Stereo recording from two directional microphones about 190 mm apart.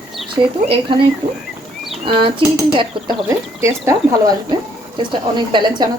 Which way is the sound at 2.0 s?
25° right (ahead or behind).